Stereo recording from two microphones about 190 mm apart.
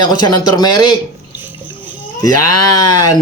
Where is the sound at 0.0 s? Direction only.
20° left (ahead or behind).